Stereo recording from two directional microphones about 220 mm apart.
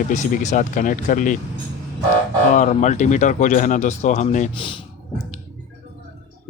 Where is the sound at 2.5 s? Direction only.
35° left (ahead or behind).